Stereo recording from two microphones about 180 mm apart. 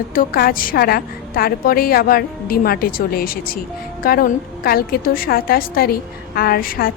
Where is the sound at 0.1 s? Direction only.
55° left (ahead or behind).